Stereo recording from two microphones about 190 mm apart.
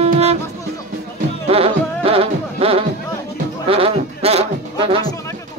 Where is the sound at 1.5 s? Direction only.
30° right (ahead or behind).